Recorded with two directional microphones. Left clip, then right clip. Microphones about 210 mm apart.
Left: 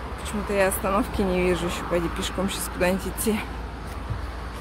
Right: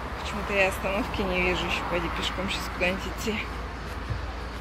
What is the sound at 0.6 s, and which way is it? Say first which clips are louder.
Speech: left 3 dB; 20° left (ahead or behind).